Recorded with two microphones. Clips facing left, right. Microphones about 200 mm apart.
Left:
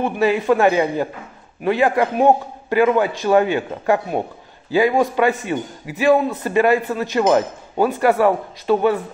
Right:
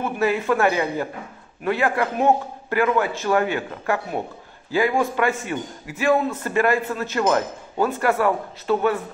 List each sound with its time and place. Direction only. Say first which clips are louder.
0.0 s a man's voice: left 4 dB; 20° left (ahead or behind)